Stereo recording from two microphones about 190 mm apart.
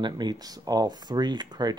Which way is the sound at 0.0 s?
25° right (ahead or behind).